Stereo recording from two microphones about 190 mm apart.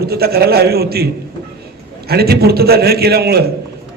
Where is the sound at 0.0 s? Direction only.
55° right (ahead or behind).